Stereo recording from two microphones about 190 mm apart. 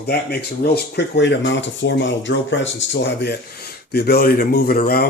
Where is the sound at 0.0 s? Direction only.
55° left (ahead or behind).